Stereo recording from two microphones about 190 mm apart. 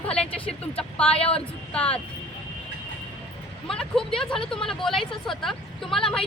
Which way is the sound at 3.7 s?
5° left (ahead or behind).